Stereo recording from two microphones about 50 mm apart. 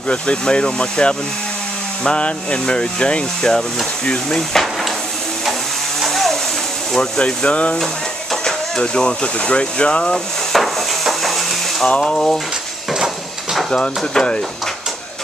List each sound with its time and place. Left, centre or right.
0.1 s speech: centre
5.9 s a sound: centre
6.9 s speech: centre
10.1 s a sound: centre
11.8 s speech: centre
13.7 s speech: centre